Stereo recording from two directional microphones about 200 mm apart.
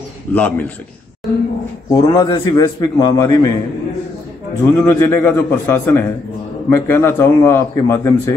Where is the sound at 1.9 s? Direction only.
20° left (ahead or behind).